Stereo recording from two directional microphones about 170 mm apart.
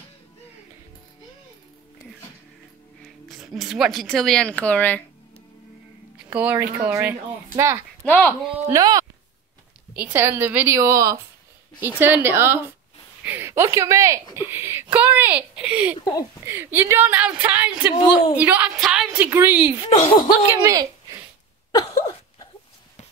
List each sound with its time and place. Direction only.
3.3 s speech: centre (ahead or behind)
6.3 s a woman's voice: 10° right (ahead or behind)
8.0 s speech: 10° left (ahead or behind)
8.6 s a woman's voice: 20° right (ahead or behind)
19.9 s speech: 30° left (ahead or behind)
20.6 s a sound: 20° right (ahead or behind)
21.9 s a sound: 20° left (ahead or behind)